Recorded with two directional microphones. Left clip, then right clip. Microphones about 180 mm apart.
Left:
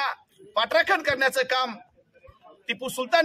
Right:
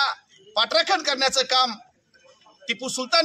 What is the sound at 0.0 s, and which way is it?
Speech, 10° left (ahead or behind).